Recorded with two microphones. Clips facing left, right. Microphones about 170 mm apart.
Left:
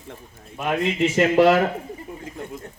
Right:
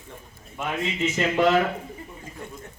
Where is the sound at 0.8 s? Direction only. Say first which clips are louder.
Left 6 dB; 65° left (ahead or behind).